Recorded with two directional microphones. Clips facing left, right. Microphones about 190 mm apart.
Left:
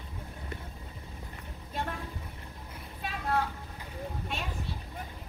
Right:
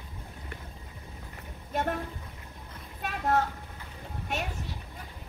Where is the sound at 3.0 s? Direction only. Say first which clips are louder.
Right 4 dB; 45° right (ahead or behind).